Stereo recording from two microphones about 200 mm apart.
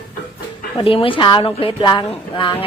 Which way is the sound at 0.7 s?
25° left (ahead or behind).